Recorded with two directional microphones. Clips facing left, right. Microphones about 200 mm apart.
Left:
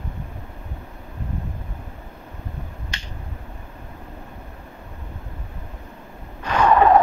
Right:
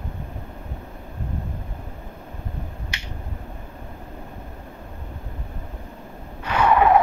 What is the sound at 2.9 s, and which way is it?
Finger snapping, 10° right (ahead or behind).